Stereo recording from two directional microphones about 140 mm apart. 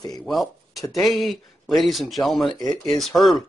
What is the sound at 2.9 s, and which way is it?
Speech, centre (ahead or behind).